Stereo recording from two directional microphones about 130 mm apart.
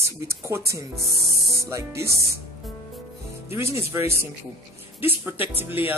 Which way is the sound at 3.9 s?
20° right (ahead or behind).